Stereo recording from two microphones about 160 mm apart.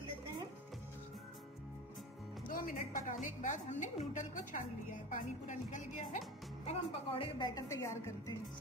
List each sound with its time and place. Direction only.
2.5 s a woman's voice: 55° left (ahead or behind)
6.7 s a woman's voice: 30° left (ahead or behind)